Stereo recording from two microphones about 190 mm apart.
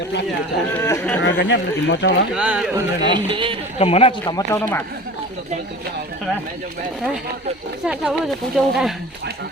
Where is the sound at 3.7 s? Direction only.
30° left (ahead or behind); by 4.8 s 10° left (ahead or behind).